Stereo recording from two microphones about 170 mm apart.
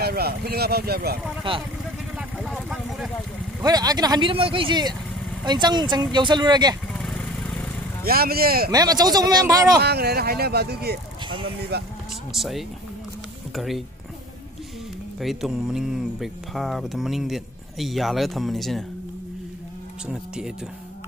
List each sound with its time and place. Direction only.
0.0 s speech: 65° right (ahead or behind)
1.5 s speech: 30° right (ahead or behind)
2.1 s vehicle: 5° right (ahead or behind)
3.6 s speech: 25° right (ahead or behind)
7.0 s vehicle: centre (ahead or behind)
8.0 s speech: 60° right (ahead or behind)
8.7 s speech: 25° right (ahead or behind)
9.8 s speech: 70° right (ahead or behind)
11.2 s speech: 30° right (ahead or behind)
12.3 s speech: centre (ahead or behind)
15.1 s speech: centre (ahead or behind)
20.1 s speech: 5° right (ahead or behind)